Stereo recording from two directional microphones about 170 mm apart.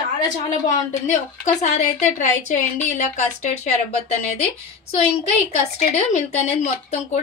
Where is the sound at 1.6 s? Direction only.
45° left (ahead or behind).